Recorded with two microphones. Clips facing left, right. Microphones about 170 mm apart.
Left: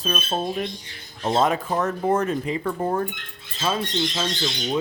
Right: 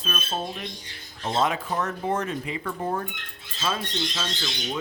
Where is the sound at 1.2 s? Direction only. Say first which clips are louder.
Left 4 dB; 45° left (ahead or behind).